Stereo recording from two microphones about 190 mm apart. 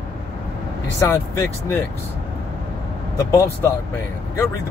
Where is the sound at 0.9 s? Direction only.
15° left (ahead or behind).